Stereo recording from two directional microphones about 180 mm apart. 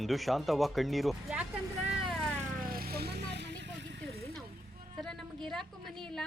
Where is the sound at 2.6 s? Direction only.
55° right (ahead or behind); by 3.5 s 70° right (ahead or behind).